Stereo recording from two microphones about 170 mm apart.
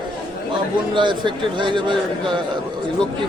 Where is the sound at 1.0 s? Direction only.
30° right (ahead or behind).